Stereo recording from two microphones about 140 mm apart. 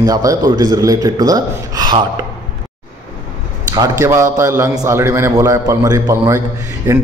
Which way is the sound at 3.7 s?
25° right (ahead or behind).